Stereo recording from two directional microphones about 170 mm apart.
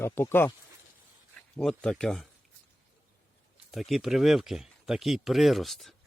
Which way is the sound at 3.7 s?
Centre (ahead or behind).